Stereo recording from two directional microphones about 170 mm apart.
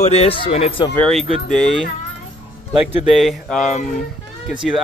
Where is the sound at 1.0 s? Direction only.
Centre (ahead or behind).